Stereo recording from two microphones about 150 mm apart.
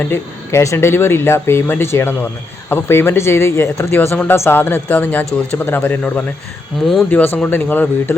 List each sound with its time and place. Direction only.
0.0 s speech: 15° left (ahead or behind)